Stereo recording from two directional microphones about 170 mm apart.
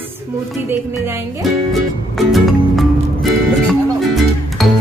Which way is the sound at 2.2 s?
Centre (ahead or behind).